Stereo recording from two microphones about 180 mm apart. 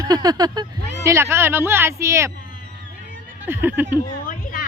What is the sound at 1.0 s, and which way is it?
A woman's voice, 15° right (ahead or behind).